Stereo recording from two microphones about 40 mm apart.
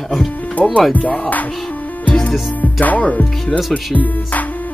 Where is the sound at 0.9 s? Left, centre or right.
Left.